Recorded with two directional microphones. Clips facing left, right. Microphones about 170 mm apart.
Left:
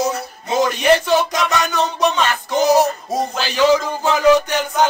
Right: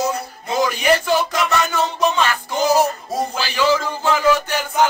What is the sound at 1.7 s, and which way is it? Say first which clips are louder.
Music: left 2 dB; 20° left (ahead or behind).